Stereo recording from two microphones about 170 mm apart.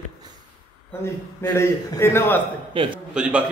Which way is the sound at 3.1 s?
5° right (ahead or behind).